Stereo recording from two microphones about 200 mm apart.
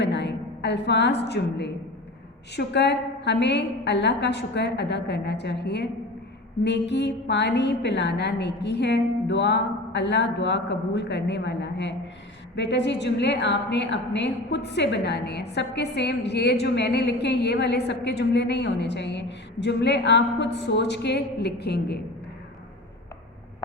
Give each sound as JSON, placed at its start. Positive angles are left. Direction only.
{"t": 0.0, "sound": "a woman's voice", "side_deg": 60}